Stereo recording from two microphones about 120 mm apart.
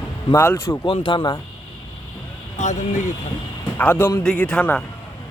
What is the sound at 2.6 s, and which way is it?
Speech, 90° left.